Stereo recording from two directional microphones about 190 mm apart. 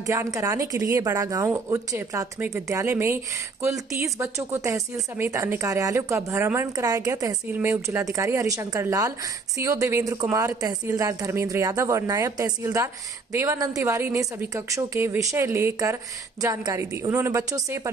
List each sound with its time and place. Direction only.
0.0 s speech: 15° right (ahead or behind)